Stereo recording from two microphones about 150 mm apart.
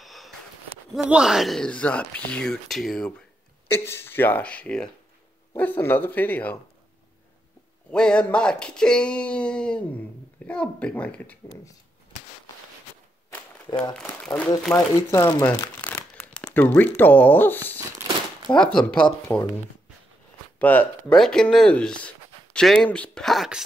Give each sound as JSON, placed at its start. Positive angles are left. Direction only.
{"t": 0.0, "sound": "a sound", "side_deg": 0}
{"t": 1.1, "sound": "speech", "side_deg": 0}
{"t": 3.6, "sound": "speech", "side_deg": 15}
{"t": 7.9, "sound": "speech", "side_deg": 5}
{"t": 13.7, "sound": "speech", "side_deg": 30}
{"t": 14.2, "sound": "speech", "side_deg": 10}
{"t": 15.0, "sound": "speech", "side_deg": 20}
{"t": 20.5, "sound": "speech", "side_deg": 10}